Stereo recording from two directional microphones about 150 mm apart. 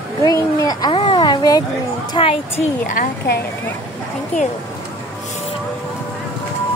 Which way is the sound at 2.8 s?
65° left (ahead or behind).